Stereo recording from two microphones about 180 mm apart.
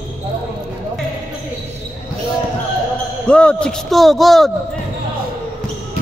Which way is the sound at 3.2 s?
5° left (ahead or behind).